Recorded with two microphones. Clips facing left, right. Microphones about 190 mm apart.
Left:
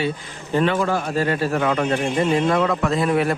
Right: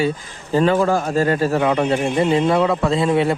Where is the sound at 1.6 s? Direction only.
20° right (ahead or behind).